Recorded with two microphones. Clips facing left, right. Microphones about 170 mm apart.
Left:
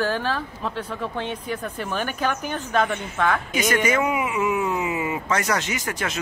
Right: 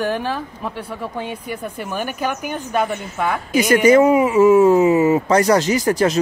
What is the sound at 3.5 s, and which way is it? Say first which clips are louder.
Speech: right 9 dB; 35° right (ahead or behind).